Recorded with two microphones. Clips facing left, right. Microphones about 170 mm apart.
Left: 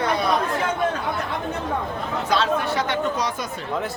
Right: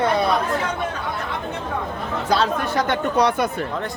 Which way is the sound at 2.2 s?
40° right (ahead or behind).